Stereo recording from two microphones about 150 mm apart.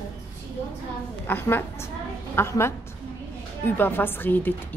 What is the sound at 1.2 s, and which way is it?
A woman's voice, 15° left (ahead or behind).